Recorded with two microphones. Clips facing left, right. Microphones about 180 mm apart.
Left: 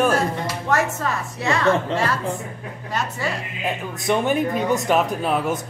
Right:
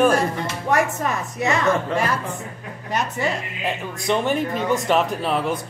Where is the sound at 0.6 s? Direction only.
15° right (ahead or behind).